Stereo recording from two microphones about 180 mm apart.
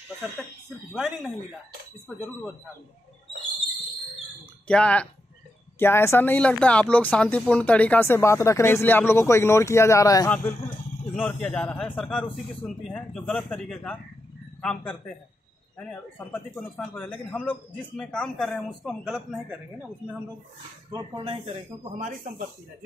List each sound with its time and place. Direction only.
0.9 s a man's voice: centre (ahead or behind)
4.6 s a man's voice: 5° left (ahead or behind)
11.1 s a man's voice: 5° left (ahead or behind)
20.9 s speech: 30° right (ahead or behind)